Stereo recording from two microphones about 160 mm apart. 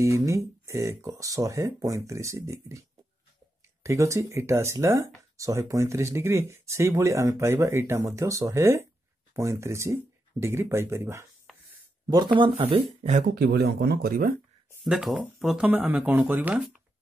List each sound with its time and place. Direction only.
0.0 s speech: 20° right (ahead or behind)
3.8 s speech: 20° right (ahead or behind)
11.5 s a sound: centre (ahead or behind)
12.1 s speech: 30° right (ahead or behind)
13.3 s speech: 80° right
14.9 s speech: 5° right (ahead or behind)